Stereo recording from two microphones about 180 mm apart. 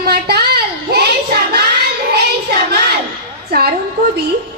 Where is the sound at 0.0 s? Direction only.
60° right (ahead or behind).